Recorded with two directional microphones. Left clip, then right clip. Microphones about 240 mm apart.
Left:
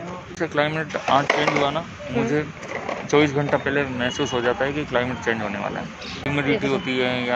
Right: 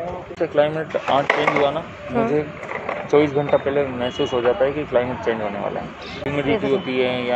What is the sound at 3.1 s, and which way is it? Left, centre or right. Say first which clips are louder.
Speech: right 2 dB; left.